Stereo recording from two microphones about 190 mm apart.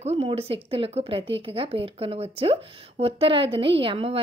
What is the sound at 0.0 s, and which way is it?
Speech, 30° right (ahead or behind).